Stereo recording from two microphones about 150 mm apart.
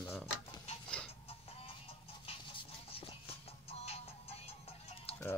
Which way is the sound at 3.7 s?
45° left (ahead or behind).